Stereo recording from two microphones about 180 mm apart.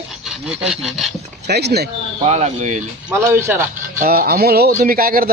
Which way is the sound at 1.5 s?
65° right (ahead or behind).